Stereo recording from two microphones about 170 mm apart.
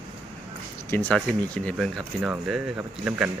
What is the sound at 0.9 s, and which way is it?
A man's voice, 10° left (ahead or behind).